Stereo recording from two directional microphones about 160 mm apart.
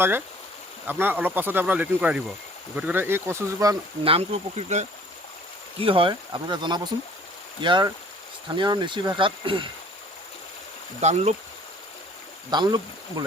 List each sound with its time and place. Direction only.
0.9 s speech: 10° right (ahead or behind)
4.0 s speech: 40° right (ahead or behind)
5.8 s speech: 35° right (ahead or behind)
11.0 s speech: 45° right (ahead or behind)
12.5 s speech: 25° right (ahead or behind)